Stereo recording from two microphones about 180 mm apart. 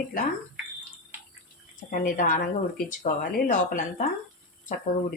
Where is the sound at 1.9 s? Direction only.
50° left (ahead or behind).